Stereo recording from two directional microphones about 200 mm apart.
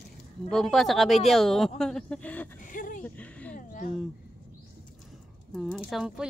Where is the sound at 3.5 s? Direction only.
40° left (ahead or behind).